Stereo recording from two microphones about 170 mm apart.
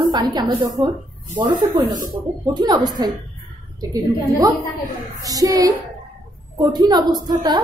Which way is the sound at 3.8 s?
20° right (ahead or behind).